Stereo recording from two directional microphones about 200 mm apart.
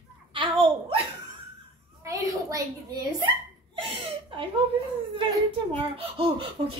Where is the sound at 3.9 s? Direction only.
25° right (ahead or behind).